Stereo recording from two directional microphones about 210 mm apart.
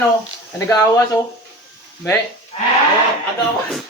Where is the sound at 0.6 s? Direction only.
15° left (ahead or behind).